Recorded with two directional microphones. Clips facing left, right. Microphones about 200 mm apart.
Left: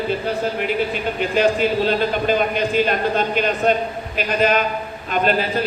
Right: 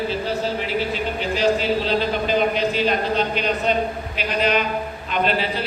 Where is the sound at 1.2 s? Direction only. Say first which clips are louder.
Left 3 dB; 55° left (ahead or behind).